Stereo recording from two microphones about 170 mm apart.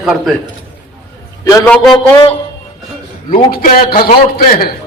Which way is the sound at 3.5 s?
55° left (ahead or behind).